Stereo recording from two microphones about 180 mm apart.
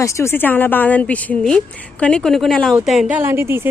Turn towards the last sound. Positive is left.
turn(degrees=-15)  # may be behind; listen again after turning